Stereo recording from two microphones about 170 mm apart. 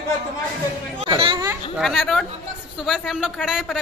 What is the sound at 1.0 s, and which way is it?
Chatter, 30° right (ahead or behind).